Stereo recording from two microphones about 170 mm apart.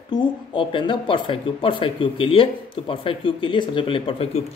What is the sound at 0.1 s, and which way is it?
Speech, 30° left (ahead or behind).